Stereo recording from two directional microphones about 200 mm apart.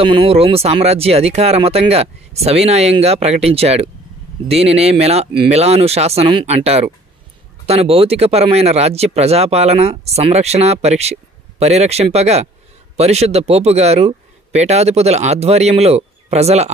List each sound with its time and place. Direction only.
0.0 s speech: 30° right (ahead or behind)